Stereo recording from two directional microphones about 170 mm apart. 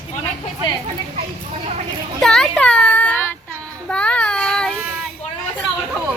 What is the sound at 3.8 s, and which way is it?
Child singing, 5° left (ahead or behind).